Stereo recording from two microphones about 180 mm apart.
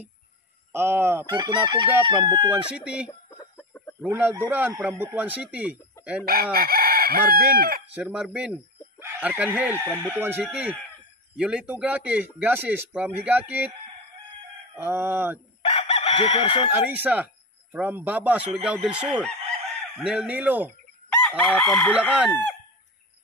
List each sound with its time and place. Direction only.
0.7 s speech: 10° right (ahead or behind)
1.3 s chicken: 25° right (ahead or behind)
2.5 s speech: 5° right (ahead or behind)
3.1 s chicken: 20° left (ahead or behind)
4.0 s speech: 10° right (ahead or behind)
6.2 s crowing: 55° right (ahead or behind)
7.9 s speech: 5° right (ahead or behind)
14.8 s speech: 10° right (ahead or behind)
15.6 s chicken: 35° left (ahead or behind)
16.7 s speech: 10° right (ahead or behind)
21.2 s chicken: 5° left (ahead or behind)
22.3 s speech: 10° left (ahead or behind)